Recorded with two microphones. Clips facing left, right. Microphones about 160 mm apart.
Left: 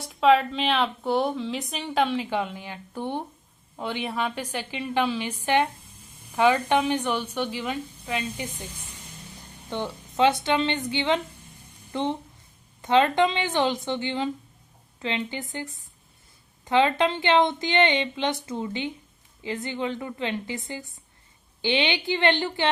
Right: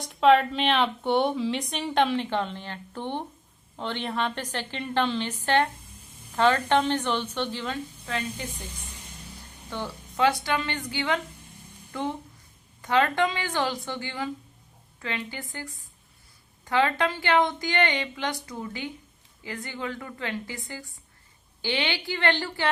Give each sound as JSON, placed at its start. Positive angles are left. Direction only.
{"t": 0.0, "sound": "a woman's voice", "side_deg": 0}
{"t": 9.6, "sound": "a woman's voice", "side_deg": 20}